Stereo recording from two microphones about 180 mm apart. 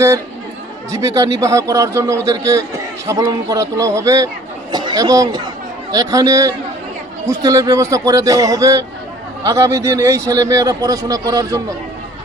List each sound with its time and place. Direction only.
0.9 s a man's voice: 20° right (ahead or behind)